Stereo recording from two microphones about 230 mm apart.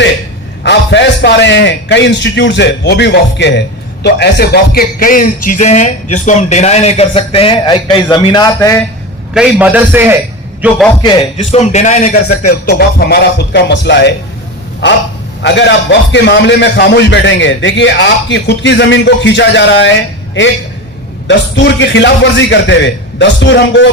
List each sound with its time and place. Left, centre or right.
0.6 s a man's voice: left; by 8.8 s centre
9.3 s a man's voice: centre
11.0 s speech: left
15.4 s a man's voice: left
21.2 s a man's voice: left